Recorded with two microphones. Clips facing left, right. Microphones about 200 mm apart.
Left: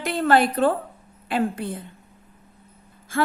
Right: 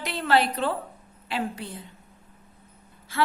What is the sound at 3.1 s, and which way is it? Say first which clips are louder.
Speech: left 3 dB; 50° left (ahead or behind).